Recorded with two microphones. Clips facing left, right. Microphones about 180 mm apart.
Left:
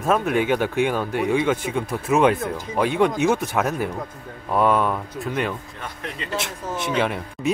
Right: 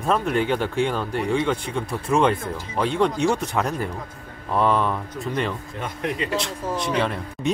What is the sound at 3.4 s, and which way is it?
Speech, 5° left (ahead or behind).